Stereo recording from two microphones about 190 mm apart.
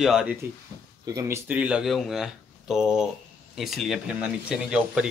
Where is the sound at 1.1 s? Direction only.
15° right (ahead or behind).